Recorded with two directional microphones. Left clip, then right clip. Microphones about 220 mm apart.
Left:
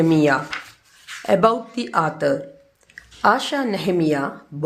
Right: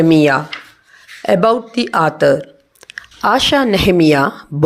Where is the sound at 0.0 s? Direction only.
25° right (ahead or behind).